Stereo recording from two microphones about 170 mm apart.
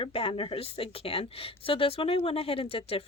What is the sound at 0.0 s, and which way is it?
A woman's voice, 35° left (ahead or behind).